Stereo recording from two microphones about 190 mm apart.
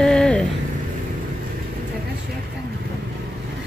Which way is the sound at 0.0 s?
5° left (ahead or behind).